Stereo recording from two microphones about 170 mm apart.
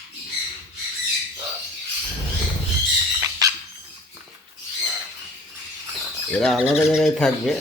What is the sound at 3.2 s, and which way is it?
Dog, 20° right (ahead or behind).